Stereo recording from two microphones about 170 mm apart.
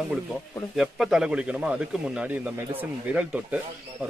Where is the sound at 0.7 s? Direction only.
Centre (ahead or behind).